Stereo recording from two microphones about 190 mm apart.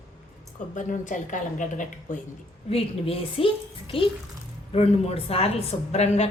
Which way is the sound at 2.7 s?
30° left (ahead or behind).